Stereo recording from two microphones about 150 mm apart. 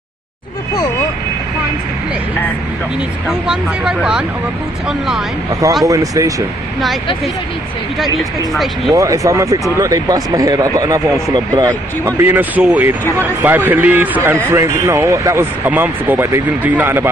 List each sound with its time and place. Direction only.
3.3 s speech: 5° right (ahead or behind)
5.5 s speech: 20° right (ahead or behind)
8.0 s speech: centre (ahead or behind)
8.9 s speech: 20° right (ahead or behind)
12.2 s speech: 10° right (ahead or behind)